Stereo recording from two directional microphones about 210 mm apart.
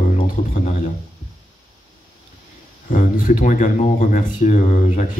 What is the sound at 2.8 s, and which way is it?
A man's voice, 40° left (ahead or behind).